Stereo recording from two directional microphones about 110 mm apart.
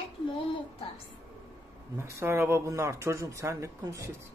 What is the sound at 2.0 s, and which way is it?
Speech, 25° right (ahead or behind).